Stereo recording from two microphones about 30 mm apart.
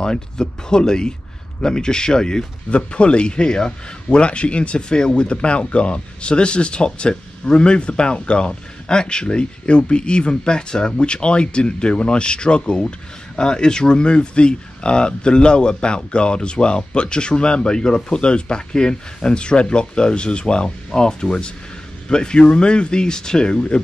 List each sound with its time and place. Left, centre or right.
0.0 s speech: left
2.7 s a man's voice: left